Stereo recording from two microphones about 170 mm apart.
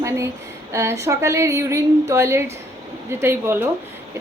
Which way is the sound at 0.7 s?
15° right (ahead or behind).